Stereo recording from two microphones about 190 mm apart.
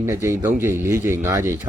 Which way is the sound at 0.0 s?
15° right (ahead or behind).